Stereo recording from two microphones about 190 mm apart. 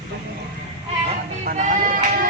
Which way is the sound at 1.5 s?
40° right (ahead or behind).